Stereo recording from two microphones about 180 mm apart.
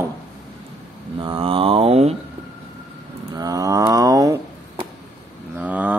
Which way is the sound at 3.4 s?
20° right (ahead or behind).